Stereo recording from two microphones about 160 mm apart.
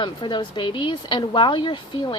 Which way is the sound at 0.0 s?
30° left (ahead or behind).